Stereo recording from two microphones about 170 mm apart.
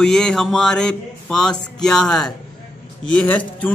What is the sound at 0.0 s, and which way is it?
A man's voice, 5° left (ahead or behind).